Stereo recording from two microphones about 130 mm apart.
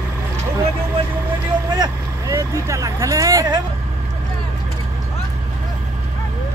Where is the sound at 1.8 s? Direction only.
25° right (ahead or behind).